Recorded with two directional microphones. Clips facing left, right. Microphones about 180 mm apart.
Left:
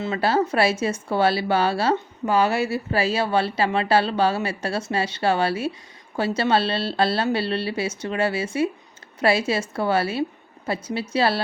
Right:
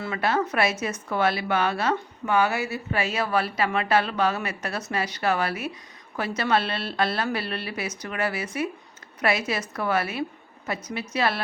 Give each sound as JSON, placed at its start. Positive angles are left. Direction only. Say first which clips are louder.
{"t": 0.0, "sound": "speech", "louder": "left 4 dB", "side_deg": 25}